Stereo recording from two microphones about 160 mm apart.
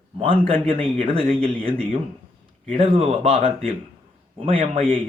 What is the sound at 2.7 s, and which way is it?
Speech, 35° right (ahead or behind).